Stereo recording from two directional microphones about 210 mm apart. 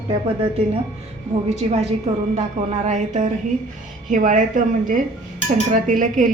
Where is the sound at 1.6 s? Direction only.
25° right (ahead or behind).